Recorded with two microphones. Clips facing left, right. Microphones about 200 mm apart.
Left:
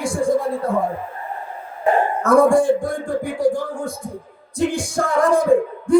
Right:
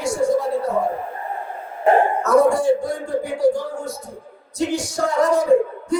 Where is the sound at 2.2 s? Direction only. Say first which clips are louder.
Left 2 dB; 50° left (ahead or behind).